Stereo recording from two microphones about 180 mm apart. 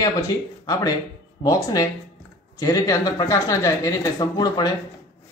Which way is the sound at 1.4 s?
20° left (ahead or behind).